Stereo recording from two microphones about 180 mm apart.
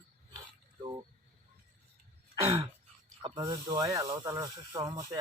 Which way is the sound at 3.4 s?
20° right (ahead or behind).